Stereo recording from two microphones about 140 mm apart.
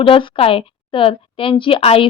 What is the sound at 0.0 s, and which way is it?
A woman's voice, 40° left (ahead or behind).